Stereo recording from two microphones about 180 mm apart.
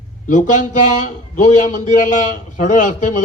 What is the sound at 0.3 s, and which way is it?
A man's voice, 45° left (ahead or behind).